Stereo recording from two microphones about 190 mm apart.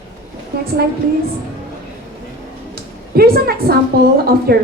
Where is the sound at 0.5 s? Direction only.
55° right (ahead or behind).